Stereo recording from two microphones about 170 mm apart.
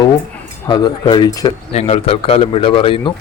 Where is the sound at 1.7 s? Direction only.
35° left (ahead or behind).